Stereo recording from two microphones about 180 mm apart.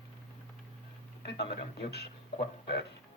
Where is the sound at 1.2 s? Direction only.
65° left (ahead or behind).